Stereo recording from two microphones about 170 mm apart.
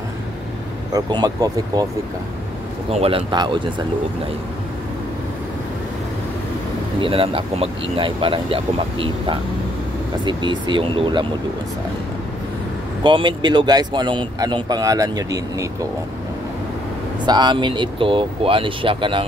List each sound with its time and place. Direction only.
0.9 s speech: 20° right (ahead or behind)
2.9 s speech: 35° right (ahead or behind)
7.0 s speech: 30° right (ahead or behind)
13.0 s speech: 30° right (ahead or behind)
17.3 s speech: 25° right (ahead or behind)